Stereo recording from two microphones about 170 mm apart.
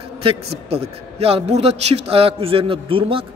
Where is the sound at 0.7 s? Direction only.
35° right (ahead or behind).